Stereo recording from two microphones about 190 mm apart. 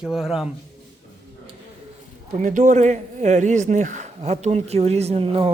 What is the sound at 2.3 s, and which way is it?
Speech, 40° right (ahead or behind).